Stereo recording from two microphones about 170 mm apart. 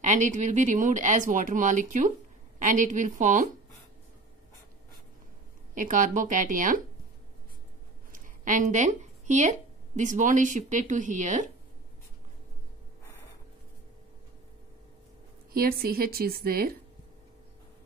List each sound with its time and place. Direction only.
0.0 s speech: 45° right (ahead or behind)
5.8 s speech: 50° right (ahead or behind)
8.1 s speech: 50° right (ahead or behind)
15.5 s speech: 60° right (ahead or behind)